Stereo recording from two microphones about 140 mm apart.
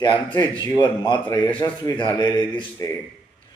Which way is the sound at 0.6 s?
30° left (ahead or behind).